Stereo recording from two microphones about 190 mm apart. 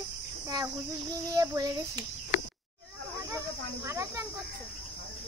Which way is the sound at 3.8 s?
15° right (ahead or behind).